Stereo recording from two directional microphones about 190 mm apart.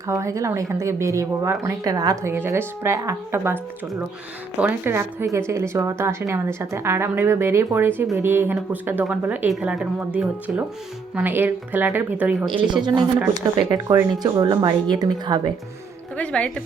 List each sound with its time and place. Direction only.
0.1 s speech: 15° right (ahead or behind)
12.5 s speech: 25° right (ahead or behind)
16.1 s a woman's voice: 5° left (ahead or behind)